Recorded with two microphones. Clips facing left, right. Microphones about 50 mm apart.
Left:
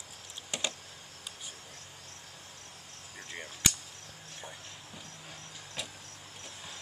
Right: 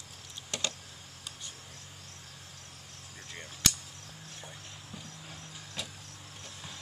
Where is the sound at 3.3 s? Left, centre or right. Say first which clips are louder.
Even; centre.